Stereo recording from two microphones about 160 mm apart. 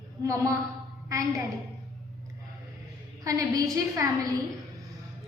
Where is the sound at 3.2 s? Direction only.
20° right (ahead or behind).